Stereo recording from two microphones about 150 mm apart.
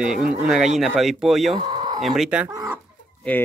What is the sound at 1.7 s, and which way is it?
Chicken, 30° right (ahead or behind).